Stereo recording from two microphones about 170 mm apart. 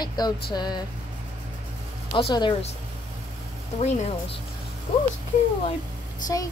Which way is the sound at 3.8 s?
40° left (ahead or behind).